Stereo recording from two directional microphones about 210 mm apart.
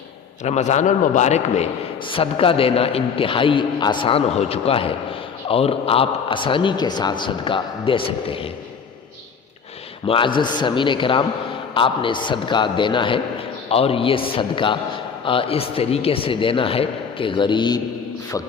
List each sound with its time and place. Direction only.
0.4 s a man's voice: 35° left (ahead or behind)
10.1 s a man's voice: 25° left (ahead or behind)